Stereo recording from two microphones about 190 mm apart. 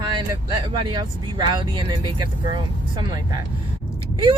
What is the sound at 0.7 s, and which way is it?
Speech, 25° right (ahead or behind).